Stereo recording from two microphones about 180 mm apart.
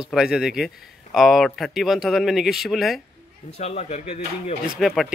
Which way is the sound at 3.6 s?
35° left (ahead or behind).